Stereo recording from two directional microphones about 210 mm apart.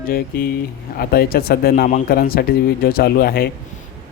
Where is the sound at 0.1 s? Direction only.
45° left (ahead or behind).